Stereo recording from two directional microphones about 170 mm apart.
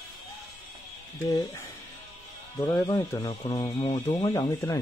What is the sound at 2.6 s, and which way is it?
Speech, 20° left (ahead or behind).